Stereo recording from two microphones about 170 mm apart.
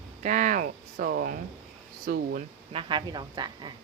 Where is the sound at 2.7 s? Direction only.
25° right (ahead or behind).